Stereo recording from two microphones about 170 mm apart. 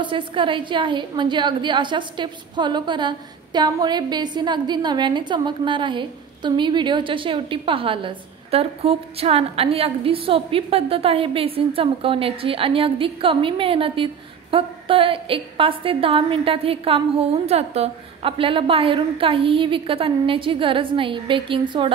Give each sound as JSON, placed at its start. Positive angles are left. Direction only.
{"t": 0.0, "sound": "a woman's voice", "side_deg": -30}